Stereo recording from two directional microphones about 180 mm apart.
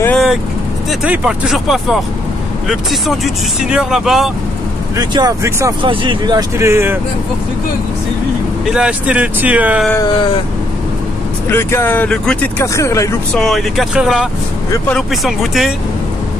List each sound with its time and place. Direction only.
0.0 s vehicle: 5° left (ahead or behind)
1.0 s speech: 5° right (ahead or behind)
4.9 s speech: 20° right (ahead or behind)
8.7 s speech: 5° right (ahead or behind)
9.9 s a sound: 25° left (ahead or behind)
11.4 s speech: 15° left (ahead or behind)
13.3 s speech: centre (ahead or behind)